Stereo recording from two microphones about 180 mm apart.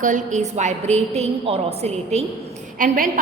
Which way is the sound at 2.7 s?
50° right (ahead or behind).